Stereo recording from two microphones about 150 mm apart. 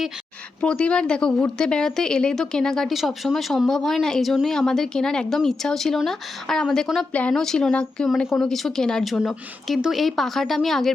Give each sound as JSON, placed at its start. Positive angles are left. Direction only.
{"t": 0.6, "sound": "a woman's voice", "side_deg": 5}